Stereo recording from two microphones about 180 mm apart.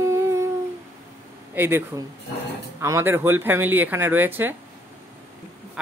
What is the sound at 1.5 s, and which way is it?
Speech, 10° right (ahead or behind).